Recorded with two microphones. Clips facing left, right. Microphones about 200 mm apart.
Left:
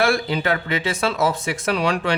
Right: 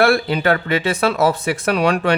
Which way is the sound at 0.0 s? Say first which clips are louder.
Right 4 dB; 60° right (ahead or behind).